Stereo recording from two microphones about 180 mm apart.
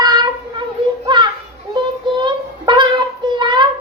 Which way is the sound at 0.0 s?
20° right (ahead or behind).